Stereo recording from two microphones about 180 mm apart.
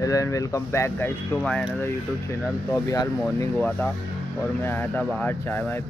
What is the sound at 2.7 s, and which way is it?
Speech, 20° left (ahead or behind).